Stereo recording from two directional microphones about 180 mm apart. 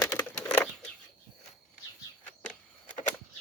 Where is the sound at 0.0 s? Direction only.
15° left (ahead or behind).